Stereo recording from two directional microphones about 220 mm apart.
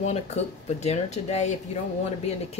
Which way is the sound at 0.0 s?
30° left (ahead or behind).